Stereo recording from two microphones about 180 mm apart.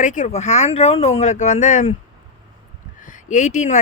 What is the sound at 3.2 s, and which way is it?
Speech, 45° left (ahead or behind).